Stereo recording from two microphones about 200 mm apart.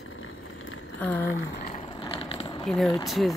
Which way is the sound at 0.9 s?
10° left (ahead or behind).